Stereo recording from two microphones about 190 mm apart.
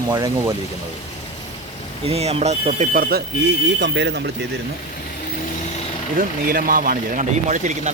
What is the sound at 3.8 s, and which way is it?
Speech, 65° right (ahead or behind).